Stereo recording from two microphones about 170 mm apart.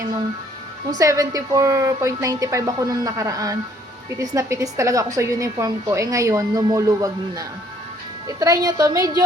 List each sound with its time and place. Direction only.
0.9 s a woman's voice: 20° right (ahead or behind)